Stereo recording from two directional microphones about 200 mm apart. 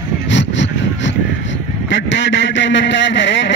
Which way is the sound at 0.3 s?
65° left (ahead or behind).